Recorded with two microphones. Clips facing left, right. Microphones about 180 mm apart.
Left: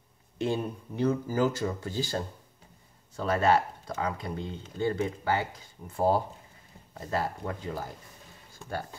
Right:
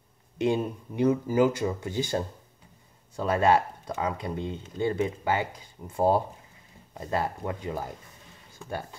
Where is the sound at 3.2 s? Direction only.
15° right (ahead or behind).